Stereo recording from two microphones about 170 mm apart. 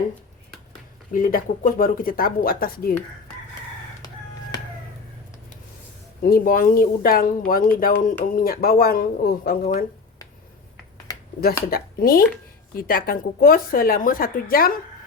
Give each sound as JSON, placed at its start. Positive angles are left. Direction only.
{"t": 1.1, "sound": "speech", "side_deg": 55}
{"t": 6.2, "sound": "speech", "side_deg": 60}
{"t": 11.7, "sound": "speech", "side_deg": 60}